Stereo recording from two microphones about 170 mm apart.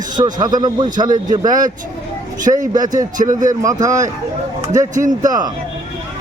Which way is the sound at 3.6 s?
20° right (ahead or behind).